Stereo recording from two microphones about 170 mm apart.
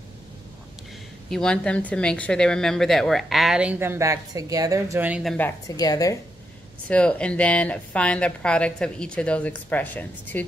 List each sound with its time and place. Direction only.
1.3 s a woman's voice: 5° left (ahead or behind); by 5.2 s 10° right (ahead or behind)
5.2 s speech: 5° left (ahead or behind)
5.8 s speech: 20° left (ahead or behind)
6.9 s speech: 5° left (ahead or behind)